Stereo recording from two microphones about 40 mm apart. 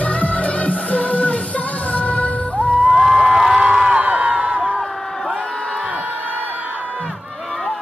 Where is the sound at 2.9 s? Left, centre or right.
Centre; by 4.7 s right.